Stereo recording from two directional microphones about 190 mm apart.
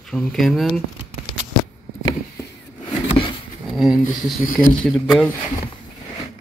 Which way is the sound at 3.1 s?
30° left (ahead or behind).